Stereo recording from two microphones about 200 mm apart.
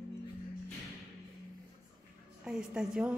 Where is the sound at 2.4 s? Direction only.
5° right (ahead or behind).